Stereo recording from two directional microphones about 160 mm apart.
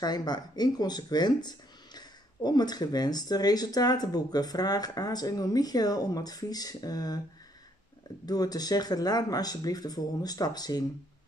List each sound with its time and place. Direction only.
0.0 s speech: 25° left (ahead or behind)
8.3 s speech: 25° left (ahead or behind)